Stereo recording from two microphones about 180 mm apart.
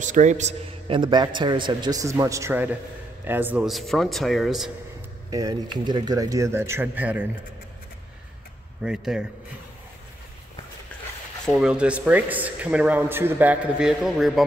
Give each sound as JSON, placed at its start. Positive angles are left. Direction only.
{"t": 0.0, "sound": "a man's voice", "side_deg": -45}
{"t": 5.3, "sound": "a man's voice", "side_deg": -20}
{"t": 8.8, "sound": "speech", "side_deg": -5}
{"t": 11.4, "sound": "a man's voice", "side_deg": 0}